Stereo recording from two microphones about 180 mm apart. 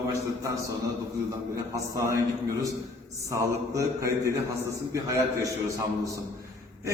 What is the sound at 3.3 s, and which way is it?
A man's voice, 15° right (ahead or behind).